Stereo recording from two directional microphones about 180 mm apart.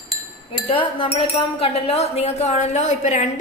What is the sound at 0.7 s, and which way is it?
Speech, 30° left (ahead or behind).